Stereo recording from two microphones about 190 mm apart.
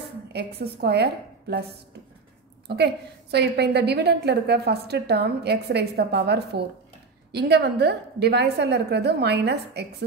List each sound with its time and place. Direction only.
0.3 s a woman's voice: 60° right (ahead or behind)